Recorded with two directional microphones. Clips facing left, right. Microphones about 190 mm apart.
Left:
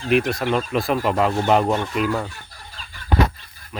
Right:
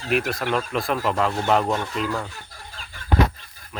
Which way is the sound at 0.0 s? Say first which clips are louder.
Left 4 dB; 5° right (ahead or behind).